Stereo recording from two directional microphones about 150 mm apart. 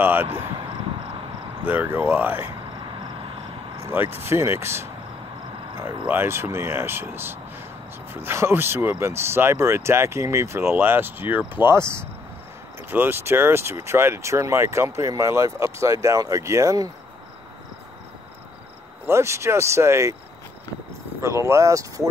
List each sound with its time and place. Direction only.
0.0 s speech: 15° right (ahead or behind)
1.6 s speech: 10° right (ahead or behind)
3.8 s speech: 15° right (ahead or behind)
19.0 s speech: 20° right (ahead or behind)
21.2 s speech: 20° right (ahead or behind)